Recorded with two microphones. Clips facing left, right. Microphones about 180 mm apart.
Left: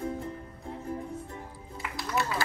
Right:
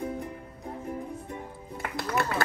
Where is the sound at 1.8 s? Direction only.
60° right (ahead or behind).